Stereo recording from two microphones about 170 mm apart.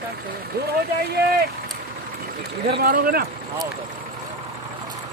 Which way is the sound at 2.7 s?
65° right (ahead or behind).